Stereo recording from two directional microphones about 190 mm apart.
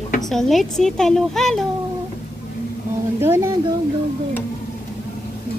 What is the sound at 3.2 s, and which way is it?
Speech, 10° right (ahead or behind).